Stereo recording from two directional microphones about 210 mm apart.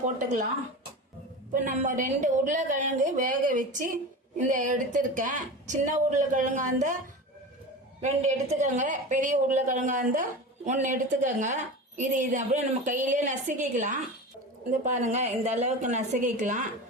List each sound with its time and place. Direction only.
0.0 s a woman's voice: 35° right (ahead or behind)
1.5 s a woman's voice: 40° right (ahead or behind)
8.0 s a woman's voice: 30° right (ahead or behind)